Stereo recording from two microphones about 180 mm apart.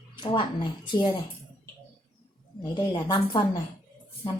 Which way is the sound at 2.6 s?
25° left (ahead or behind).